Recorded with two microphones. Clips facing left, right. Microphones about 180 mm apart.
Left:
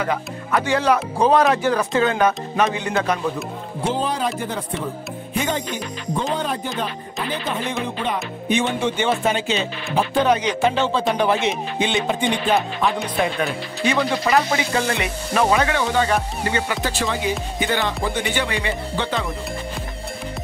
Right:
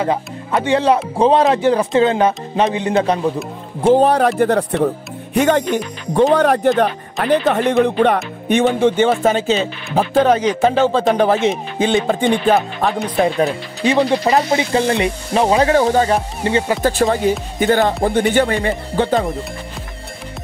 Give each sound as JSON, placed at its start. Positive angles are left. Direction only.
{"t": 0.0, "sound": "speech", "side_deg": -25}
{"t": 3.8, "sound": "speech", "side_deg": -60}
{"t": 13.8, "sound": "speech", "side_deg": -30}
{"t": 16.8, "sound": "speech", "side_deg": -50}